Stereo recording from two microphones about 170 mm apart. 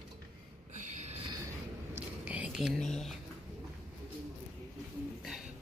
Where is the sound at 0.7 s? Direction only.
45° right (ahead or behind).